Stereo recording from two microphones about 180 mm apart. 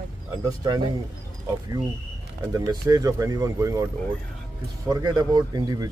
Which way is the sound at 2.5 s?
20° right (ahead or behind).